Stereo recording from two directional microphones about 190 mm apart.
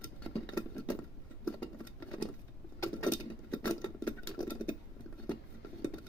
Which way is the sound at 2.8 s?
15° left (ahead or behind).